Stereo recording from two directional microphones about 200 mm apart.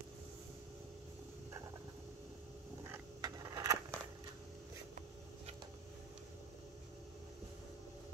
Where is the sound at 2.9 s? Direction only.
20° right (ahead or behind).